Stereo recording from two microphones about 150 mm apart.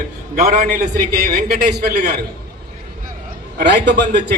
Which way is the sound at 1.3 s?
90° right.